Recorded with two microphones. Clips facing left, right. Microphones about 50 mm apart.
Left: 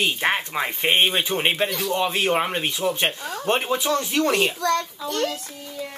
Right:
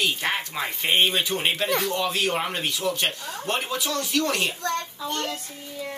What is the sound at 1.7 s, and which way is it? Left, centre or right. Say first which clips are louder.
Speech: right 1 dB; right.